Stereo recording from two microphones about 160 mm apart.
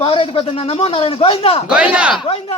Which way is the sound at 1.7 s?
5° right (ahead or behind).